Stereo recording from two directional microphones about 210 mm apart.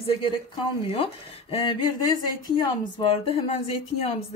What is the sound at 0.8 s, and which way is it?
Speech, 25° left (ahead or behind).